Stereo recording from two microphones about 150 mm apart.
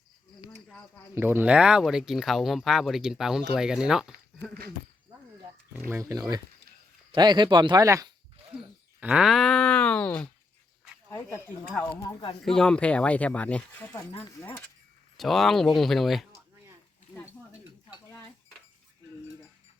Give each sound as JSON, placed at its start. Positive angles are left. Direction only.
{"t": 1.1, "sound": "speech", "side_deg": -15}
{"t": 5.9, "sound": "speech", "side_deg": -20}
{"t": 8.5, "sound": "speech", "side_deg": -10}
{"t": 12.5, "sound": "speech", "side_deg": 5}
{"t": 14.1, "sound": "speech", "side_deg": 25}
{"t": 15.2, "sound": "speech", "side_deg": 0}